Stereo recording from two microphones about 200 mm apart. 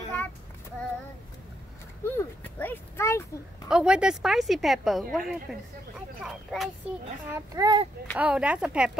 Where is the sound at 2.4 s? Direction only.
10° left (ahead or behind).